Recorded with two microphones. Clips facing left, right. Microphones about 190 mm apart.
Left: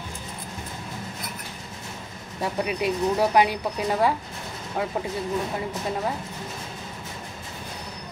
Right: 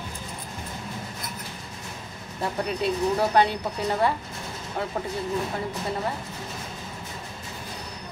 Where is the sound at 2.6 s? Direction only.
10° left (ahead or behind).